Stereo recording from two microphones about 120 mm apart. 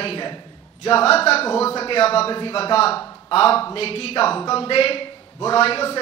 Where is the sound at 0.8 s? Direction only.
55° left (ahead or behind).